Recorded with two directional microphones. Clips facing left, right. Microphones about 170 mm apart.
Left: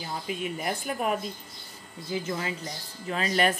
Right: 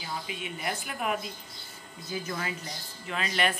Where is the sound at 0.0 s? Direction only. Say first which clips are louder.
Left 4 dB; 45° left (ahead or behind).